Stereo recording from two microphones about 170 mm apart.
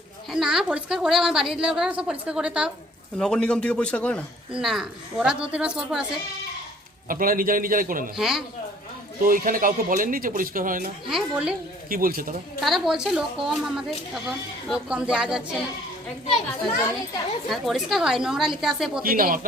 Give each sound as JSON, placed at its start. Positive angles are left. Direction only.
{"t": 0.3, "sound": "speech", "side_deg": 0}
{"t": 7.1, "sound": "a man's voice", "side_deg": -55}
{"t": 8.1, "sound": "speech", "side_deg": 0}
{"t": 9.2, "sound": "a man's voice", "side_deg": -55}
{"t": 11.0, "sound": "speech", "side_deg": -5}
{"t": 11.9, "sound": "a man's voice", "side_deg": -55}
{"t": 12.5, "sound": "speech", "side_deg": 0}
{"t": 17.5, "sound": "speech", "side_deg": 0}
{"t": 19.0, "sound": "a man's voice", "side_deg": -55}